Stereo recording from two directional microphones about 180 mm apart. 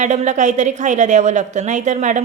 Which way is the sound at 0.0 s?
40° right (ahead or behind).